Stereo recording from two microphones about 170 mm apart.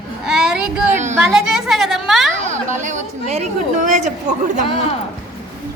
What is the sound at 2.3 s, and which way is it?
Chatter, 45° right (ahead or behind).